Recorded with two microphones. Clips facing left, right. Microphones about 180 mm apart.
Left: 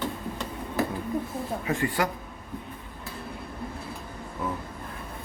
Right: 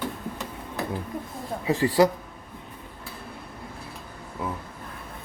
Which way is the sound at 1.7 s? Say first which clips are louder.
Right 7 dB; 35° right (ahead or behind).